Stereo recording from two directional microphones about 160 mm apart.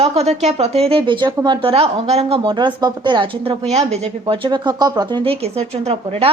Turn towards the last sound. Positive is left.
turn(degrees=-40)  # may be behind; listen again after turning